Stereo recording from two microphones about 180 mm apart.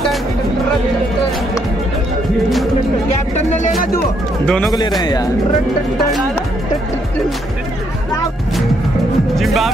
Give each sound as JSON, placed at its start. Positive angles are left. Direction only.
{"t": 3.3, "sound": "music", "side_deg": 45}
{"t": 4.5, "sound": "speech", "side_deg": 5}
{"t": 4.7, "sound": "a man's voice", "side_deg": 25}
{"t": 9.3, "sound": "speech", "side_deg": 0}